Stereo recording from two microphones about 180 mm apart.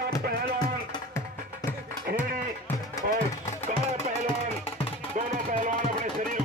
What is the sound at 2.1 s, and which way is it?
Sheep, 65° right (ahead or behind).